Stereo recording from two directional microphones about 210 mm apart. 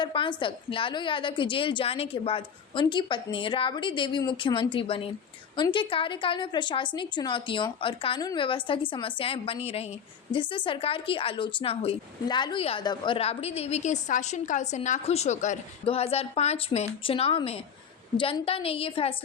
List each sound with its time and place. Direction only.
0.0 s speech: 25° left (ahead or behind)